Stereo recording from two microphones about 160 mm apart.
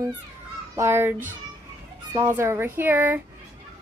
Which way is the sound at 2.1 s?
15° right (ahead or behind).